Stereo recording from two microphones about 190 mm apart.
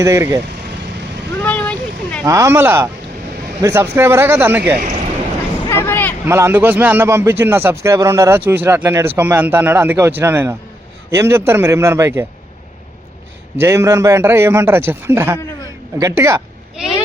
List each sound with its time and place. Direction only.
0.0 s a man's voice: 15° right (ahead or behind)
1.4 s vehicle: 5° left (ahead or behind)
2.2 s a man's voice: 15° right (ahead or behind)
5.6 s hubbub: 10° left (ahead or behind)
6.2 s a man's voice: 15° right (ahead or behind)
13.6 s a man's voice: 15° right (ahead or behind)
16.8 s a child's voice: 5° right (ahead or behind)